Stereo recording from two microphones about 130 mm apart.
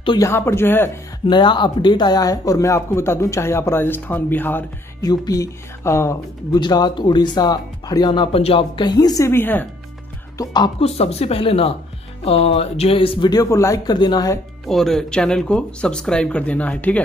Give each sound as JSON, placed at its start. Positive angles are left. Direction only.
{"t": 0.2, "sound": "speech", "side_deg": 20}
{"t": 1.2, "sound": "speech", "side_deg": 35}
{"t": 5.0, "sound": "speech", "side_deg": 30}
{"t": 6.6, "sound": "speech", "side_deg": 35}
{"t": 10.3, "sound": "speech", "side_deg": 30}
{"t": 10.8, "sound": "speech", "side_deg": 50}
{"t": 13.3, "sound": "speech", "side_deg": 25}
{"t": 14.7, "sound": "speech", "side_deg": 5}